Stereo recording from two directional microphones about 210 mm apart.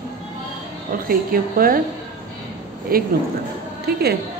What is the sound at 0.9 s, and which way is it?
Speech, 45° right (ahead or behind).